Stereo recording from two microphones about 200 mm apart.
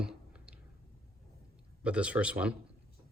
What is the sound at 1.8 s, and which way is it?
Speech, 5° right (ahead or behind).